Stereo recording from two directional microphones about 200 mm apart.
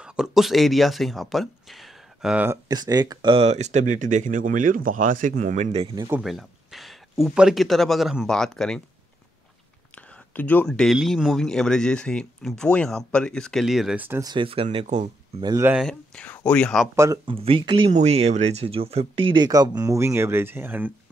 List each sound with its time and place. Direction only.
0.0 s speech: 5° right (ahead or behind); by 5.9 s 35° right (ahead or behind)
5.9 s speech: 15° right (ahead or behind)
6.2 s a man's voice: centre (ahead or behind)
10.3 s a man's voice: 10° left (ahead or behind); by 14.3 s 10° right (ahead or behind)
14.3 s speech: 25° right (ahead or behind)
15.4 s speech: 15° right (ahead or behind)
15.7 s a man's voice: centre (ahead or behind)
16.9 s speech: 15° right (ahead or behind)
17.3 s speech: 25° right (ahead or behind); by 20.9 s 10° right (ahead or behind)